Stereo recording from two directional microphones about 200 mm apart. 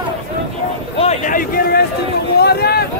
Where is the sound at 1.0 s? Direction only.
35° left (ahead or behind); by 2.8 s 50° left (ahead or behind).